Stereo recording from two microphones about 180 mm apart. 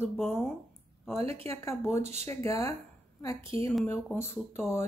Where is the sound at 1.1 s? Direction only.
35° right (ahead or behind).